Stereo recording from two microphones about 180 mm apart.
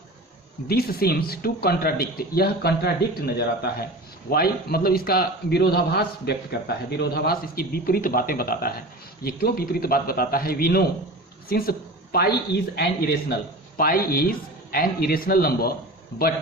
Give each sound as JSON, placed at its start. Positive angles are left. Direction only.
{"t": 0.7, "sound": "a man's voice", "side_deg": 60}